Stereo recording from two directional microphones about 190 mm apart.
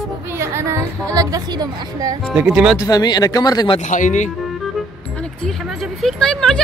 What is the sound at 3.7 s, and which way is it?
Speech, 40° left (ahead or behind).